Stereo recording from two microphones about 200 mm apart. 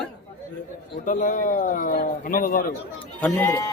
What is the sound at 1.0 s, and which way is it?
A man's voice, 40° left (ahead or behind).